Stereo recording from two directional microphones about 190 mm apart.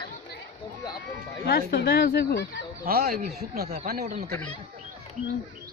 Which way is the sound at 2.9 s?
50° right (ahead or behind).